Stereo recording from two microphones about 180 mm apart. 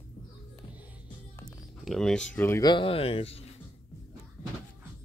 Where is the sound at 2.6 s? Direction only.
25° left (ahead or behind).